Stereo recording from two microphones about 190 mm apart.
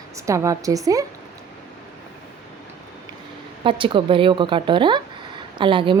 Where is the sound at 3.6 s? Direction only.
25° right (ahead or behind).